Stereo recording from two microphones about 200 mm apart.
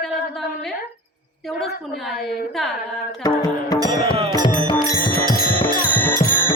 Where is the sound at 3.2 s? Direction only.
20° left (ahead or behind).